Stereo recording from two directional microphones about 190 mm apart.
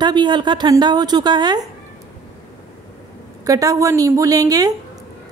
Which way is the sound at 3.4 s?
20° right (ahead or behind).